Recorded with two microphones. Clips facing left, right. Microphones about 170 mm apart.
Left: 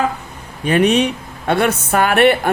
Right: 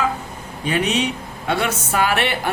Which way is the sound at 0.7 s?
55° left (ahead or behind).